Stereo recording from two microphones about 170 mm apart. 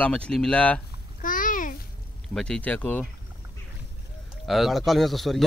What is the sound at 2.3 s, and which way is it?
Speech, 5° left (ahead or behind).